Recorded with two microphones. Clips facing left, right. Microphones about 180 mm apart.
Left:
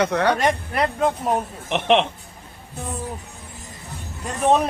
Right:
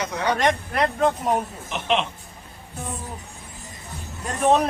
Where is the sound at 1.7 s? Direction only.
65° left (ahead or behind).